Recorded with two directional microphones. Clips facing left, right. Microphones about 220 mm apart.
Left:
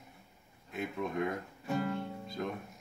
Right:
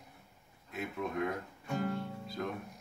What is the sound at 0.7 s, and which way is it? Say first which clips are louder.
Speech: left 1 dB; centre (ahead or behind).